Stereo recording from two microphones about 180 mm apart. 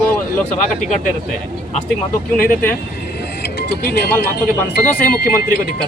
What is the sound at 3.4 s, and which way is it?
Music, 65° left (ahead or behind).